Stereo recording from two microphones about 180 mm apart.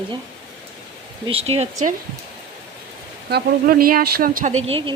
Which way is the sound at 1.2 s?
30° right (ahead or behind).